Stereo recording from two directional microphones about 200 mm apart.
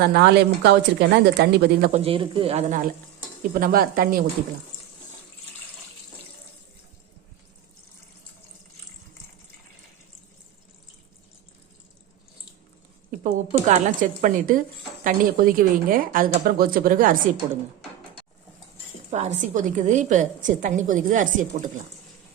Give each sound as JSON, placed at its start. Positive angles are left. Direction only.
{"t": 0.1, "sound": "speech", "side_deg": -55}
{"t": 1.9, "sound": "a man's voice", "side_deg": -30}
{"t": 13.1, "sound": "a woman's voice", "side_deg": -40}
{"t": 19.1, "sound": "a woman's voice", "side_deg": -35}